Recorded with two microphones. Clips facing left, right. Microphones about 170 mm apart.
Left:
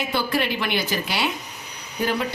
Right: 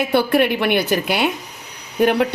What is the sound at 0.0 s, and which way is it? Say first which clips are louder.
Speech: right 8 dB; 65° right (ahead or behind).